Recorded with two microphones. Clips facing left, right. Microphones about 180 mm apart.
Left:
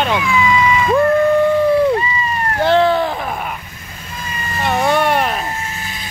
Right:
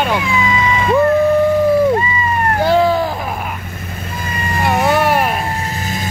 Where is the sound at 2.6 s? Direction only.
5° right (ahead or behind).